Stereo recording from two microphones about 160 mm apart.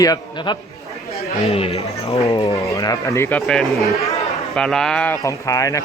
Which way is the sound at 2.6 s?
20° left (ahead or behind).